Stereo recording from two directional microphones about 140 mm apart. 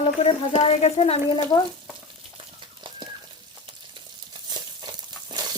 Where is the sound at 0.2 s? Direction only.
45° left (ahead or behind).